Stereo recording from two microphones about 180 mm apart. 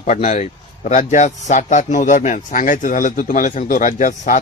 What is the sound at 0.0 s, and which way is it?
A man's voice, 45° left (ahead or behind).